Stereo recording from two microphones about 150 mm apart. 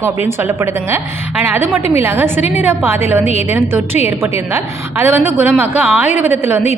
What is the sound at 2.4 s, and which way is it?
Speech, 50° left (ahead or behind).